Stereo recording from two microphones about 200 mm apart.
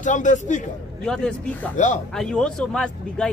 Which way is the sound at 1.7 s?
40° left (ahead or behind).